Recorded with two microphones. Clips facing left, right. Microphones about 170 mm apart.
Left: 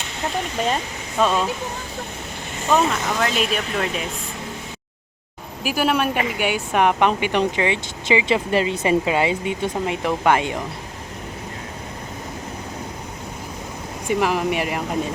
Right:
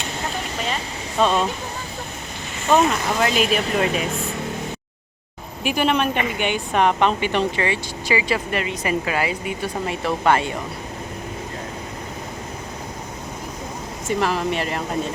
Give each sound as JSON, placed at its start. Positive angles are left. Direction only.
{"t": 1.2, "sound": "speech", "side_deg": 5}
{"t": 2.7, "sound": "speech", "side_deg": -5}
{"t": 5.6, "sound": "a woman's voice", "side_deg": 5}
{"t": 14.1, "sound": "a woman's voice", "side_deg": 15}